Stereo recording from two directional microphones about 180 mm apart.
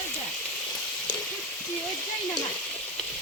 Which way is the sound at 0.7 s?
20° left (ahead or behind).